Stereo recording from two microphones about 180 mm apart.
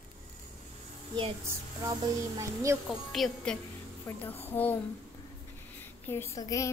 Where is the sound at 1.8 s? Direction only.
20° right (ahead or behind).